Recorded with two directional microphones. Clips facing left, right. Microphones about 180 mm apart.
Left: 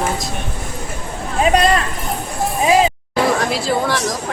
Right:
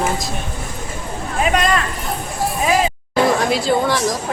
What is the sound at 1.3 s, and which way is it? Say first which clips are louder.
Speech: left 3 dB; 35° left (ahead or behind).